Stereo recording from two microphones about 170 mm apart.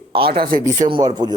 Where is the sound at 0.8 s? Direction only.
30° right (ahead or behind).